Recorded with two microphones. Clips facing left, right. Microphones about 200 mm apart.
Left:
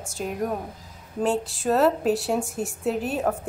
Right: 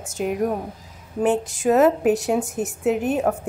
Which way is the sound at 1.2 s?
15° right (ahead or behind).